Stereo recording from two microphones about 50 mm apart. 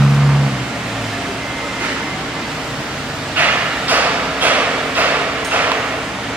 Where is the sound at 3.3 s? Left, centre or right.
Right.